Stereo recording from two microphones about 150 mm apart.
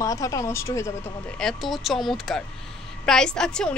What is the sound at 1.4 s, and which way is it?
A woman's voice, centre (ahead or behind).